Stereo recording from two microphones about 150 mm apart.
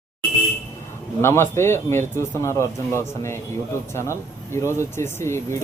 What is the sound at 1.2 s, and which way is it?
Speech, 15° left (ahead or behind).